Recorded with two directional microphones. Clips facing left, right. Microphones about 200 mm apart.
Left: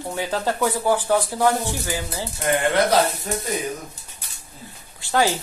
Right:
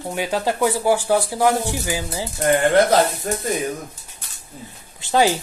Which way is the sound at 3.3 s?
55° right (ahead or behind).